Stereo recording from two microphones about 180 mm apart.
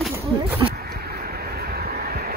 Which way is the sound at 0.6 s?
25° right (ahead or behind).